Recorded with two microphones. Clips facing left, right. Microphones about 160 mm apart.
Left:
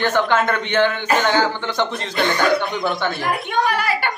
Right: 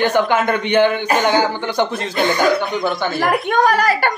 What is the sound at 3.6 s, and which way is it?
Speech, 40° right (ahead or behind).